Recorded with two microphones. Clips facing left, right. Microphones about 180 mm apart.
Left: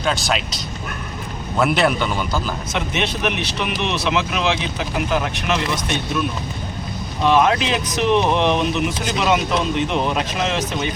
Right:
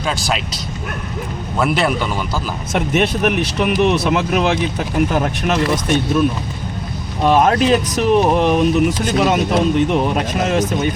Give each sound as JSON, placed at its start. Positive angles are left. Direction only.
{"t": 0.0, "sound": "speech", "side_deg": -5}
{"t": 2.7, "sound": "speech", "side_deg": -50}
{"t": 7.3, "sound": "speech", "side_deg": -40}